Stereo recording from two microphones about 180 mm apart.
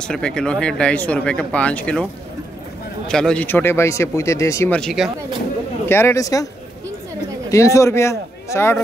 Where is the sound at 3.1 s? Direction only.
5° left (ahead or behind).